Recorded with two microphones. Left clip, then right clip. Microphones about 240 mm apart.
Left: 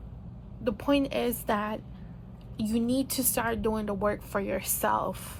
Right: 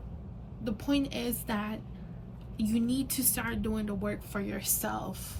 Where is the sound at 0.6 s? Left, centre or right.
Centre.